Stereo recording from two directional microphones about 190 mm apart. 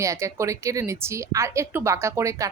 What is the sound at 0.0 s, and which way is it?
A woman's voice, 15° right (ahead or behind).